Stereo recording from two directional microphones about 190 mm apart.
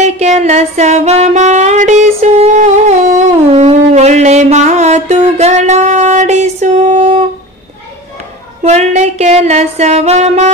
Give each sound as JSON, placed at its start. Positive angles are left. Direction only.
{"t": 0.0, "sound": "music", "side_deg": -35}
{"t": 8.6, "sound": "music", "side_deg": -35}